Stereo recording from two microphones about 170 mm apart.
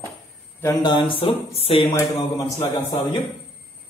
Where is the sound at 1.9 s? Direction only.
15° left (ahead or behind).